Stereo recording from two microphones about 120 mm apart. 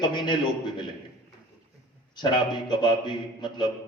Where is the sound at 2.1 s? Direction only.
40° left (ahead or behind).